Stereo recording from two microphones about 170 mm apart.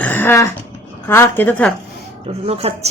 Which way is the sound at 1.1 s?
15° left (ahead or behind).